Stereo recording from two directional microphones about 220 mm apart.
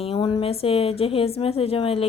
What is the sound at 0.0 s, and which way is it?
Speech, 25° left (ahead or behind).